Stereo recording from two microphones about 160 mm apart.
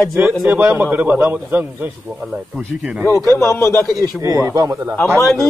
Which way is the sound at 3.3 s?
15° left (ahead or behind).